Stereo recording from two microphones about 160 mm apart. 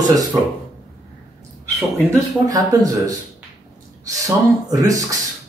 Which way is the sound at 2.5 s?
20° right (ahead or behind).